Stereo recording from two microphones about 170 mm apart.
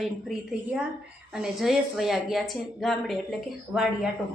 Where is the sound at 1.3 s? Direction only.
Centre (ahead or behind).